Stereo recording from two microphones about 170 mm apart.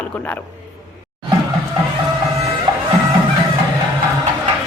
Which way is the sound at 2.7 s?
35° right (ahead or behind).